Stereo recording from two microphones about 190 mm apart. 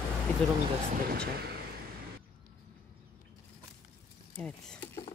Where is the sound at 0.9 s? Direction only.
55° right (ahead or behind).